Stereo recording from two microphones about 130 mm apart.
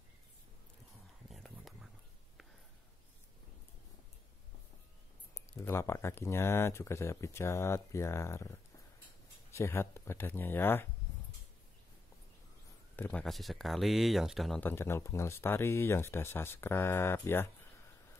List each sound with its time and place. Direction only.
1.3 s a sound: centre (ahead or behind)
5.6 s speech: 20° left (ahead or behind)
12.9 s speech: 10° left (ahead or behind)
14.6 s speech: 15° left (ahead or behind)